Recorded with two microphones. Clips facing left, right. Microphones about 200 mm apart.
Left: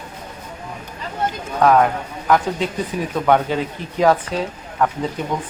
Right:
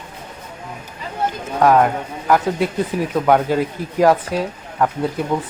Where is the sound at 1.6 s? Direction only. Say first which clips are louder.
Right 1 dB; 10° right (ahead or behind).